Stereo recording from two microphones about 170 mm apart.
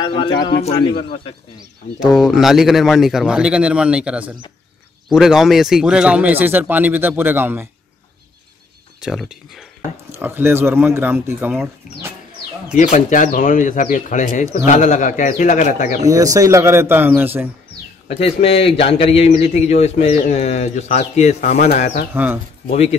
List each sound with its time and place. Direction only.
0.0 s speech: 30° left (ahead or behind)
2.0 s a man's voice: 5° right (ahead or behind)
9.0 s a man's voice: 5° right (ahead or behind)
10.1 s a man's voice: 15° right (ahead or behind)
12.7 s speech: 45° left (ahead or behind)
16.1 s a man's voice: 20° right (ahead or behind)
18.1 s a man's voice: 35° left (ahead or behind); by 22.0 s 55° left (ahead or behind)
22.1 s a man's voice: 10° right (ahead or behind)
22.7 s a man's voice: 40° left (ahead or behind)